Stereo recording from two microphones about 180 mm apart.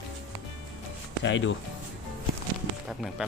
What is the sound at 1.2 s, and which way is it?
Speech, 90° left.